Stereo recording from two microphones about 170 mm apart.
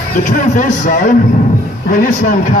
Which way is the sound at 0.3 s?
50° left (ahead or behind).